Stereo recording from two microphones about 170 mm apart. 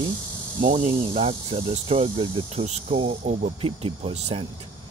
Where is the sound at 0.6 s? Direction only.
35° right (ahead or behind).